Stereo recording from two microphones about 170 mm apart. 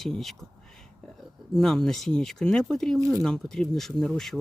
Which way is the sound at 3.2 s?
5° left (ahead or behind).